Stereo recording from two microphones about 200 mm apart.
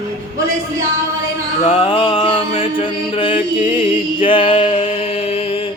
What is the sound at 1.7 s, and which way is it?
Mantra, 25° left (ahead or behind).